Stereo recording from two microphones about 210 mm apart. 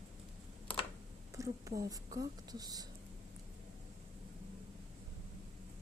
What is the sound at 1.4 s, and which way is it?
A woman's voice, 15° right (ahead or behind).